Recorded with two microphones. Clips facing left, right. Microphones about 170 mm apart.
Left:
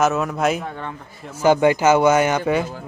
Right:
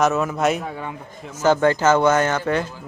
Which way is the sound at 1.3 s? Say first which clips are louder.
Left 2 dB; 15° left (ahead or behind).